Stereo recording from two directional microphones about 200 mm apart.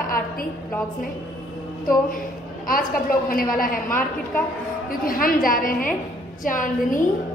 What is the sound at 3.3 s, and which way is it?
A woman's voice, 45° left (ahead or behind).